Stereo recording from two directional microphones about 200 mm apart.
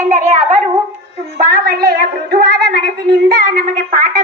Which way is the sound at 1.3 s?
45° right (ahead or behind).